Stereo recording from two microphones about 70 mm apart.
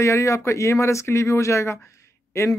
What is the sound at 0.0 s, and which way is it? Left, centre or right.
Speech, left.